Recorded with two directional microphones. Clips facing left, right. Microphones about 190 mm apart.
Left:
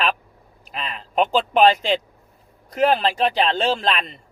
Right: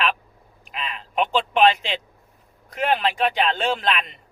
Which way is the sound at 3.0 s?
35° left (ahead or behind).